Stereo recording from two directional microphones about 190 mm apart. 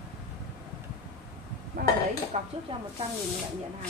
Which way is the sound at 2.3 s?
30° right (ahead or behind).